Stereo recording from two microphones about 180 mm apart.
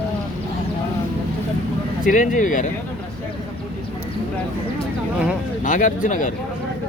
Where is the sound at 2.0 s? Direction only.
45° left (ahead or behind).